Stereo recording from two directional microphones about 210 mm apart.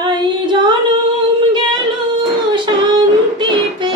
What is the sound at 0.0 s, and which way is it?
Music, 20° right (ahead or behind).